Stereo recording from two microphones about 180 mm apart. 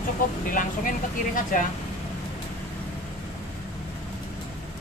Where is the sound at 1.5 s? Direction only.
50° left (ahead or behind).